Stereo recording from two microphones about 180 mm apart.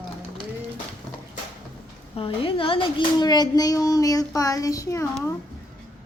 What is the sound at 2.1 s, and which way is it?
A child's voice, 30° left (ahead or behind).